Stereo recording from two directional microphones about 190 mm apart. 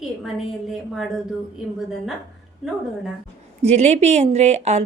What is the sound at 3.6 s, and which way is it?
A woman's voice, 35° right (ahead or behind).